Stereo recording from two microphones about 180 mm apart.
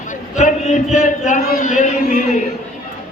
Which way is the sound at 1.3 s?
45° left (ahead or behind).